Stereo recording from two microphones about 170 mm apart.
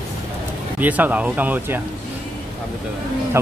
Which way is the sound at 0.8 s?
10° right (ahead or behind).